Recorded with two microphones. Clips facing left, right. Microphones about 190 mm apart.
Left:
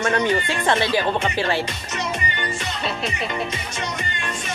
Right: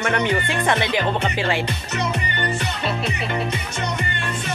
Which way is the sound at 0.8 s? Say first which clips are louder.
Left 1 dB; 20° right (ahead or behind).